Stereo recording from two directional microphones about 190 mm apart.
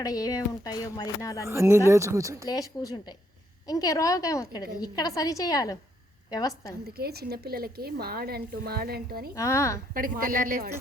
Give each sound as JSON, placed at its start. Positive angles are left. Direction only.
{"t": 0.0, "sound": "speech", "side_deg": 20}
{"t": 1.5, "sound": "speech", "side_deg": -15}
{"t": 2.5, "sound": "speech", "side_deg": 20}
{"t": 6.8, "sound": "a woman's voice", "side_deg": -55}
{"t": 9.3, "sound": "speech", "side_deg": 15}
{"t": 9.9, "sound": "speech", "side_deg": -50}